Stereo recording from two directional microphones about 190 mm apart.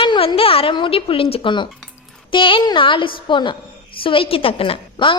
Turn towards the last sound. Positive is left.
turn(degrees=25)  # may be behind; listen again after turning